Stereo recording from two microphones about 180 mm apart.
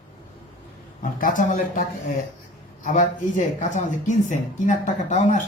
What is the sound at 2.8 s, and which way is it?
Speech, 45° left (ahead or behind).